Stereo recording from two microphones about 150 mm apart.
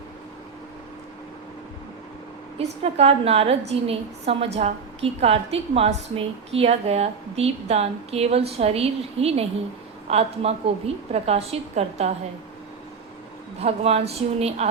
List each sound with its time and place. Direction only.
2.6 s a woman's voice: 45° right (ahead or behind)
13.6 s a woman's voice: 45° right (ahead or behind)